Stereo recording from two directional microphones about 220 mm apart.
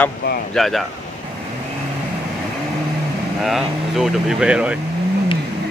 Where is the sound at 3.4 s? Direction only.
Centre (ahead or behind).